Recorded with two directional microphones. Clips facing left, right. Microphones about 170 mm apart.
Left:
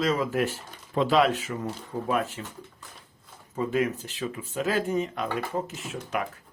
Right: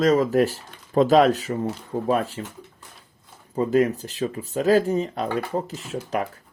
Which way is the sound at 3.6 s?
35° right (ahead or behind).